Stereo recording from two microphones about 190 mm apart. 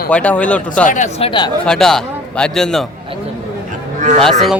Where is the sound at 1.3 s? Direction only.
25° left (ahead or behind).